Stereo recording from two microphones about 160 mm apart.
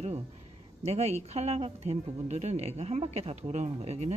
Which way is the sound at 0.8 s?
40° right (ahead or behind).